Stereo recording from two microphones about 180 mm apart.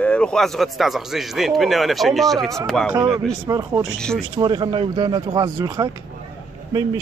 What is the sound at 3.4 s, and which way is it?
Speech, 20° right (ahead or behind).